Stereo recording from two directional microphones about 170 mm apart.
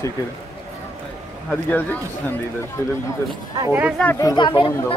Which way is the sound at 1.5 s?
10° left (ahead or behind).